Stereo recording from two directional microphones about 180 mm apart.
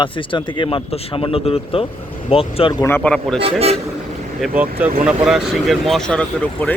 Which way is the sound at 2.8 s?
10° left (ahead or behind).